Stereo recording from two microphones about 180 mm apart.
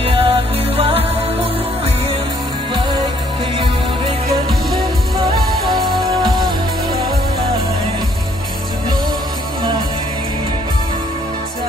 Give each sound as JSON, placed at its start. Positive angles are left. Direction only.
{"t": 0.0, "sound": "music", "side_deg": -35}
{"t": 5.7, "sound": "music", "side_deg": -25}